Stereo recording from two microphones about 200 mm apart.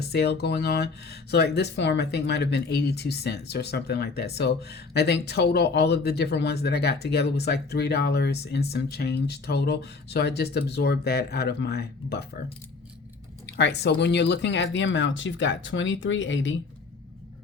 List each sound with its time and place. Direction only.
0.0 s speech: 55° left (ahead or behind)
13.5 s speech: 60° left (ahead or behind)